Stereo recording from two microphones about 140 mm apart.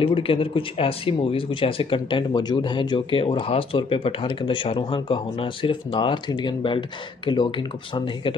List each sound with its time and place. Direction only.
0.0 s speech: 40° left (ahead or behind)